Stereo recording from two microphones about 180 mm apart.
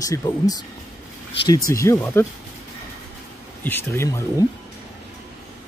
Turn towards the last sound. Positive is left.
turn(degrees=15)  # may be behind; listen again after turning